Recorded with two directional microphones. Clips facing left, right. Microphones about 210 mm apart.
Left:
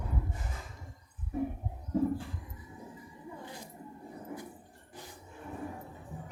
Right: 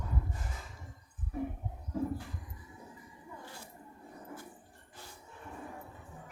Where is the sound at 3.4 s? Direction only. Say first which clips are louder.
Left 4 dB; 20° left (ahead or behind).